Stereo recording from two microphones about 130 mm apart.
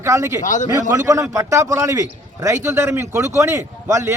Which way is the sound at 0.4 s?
70° left (ahead or behind).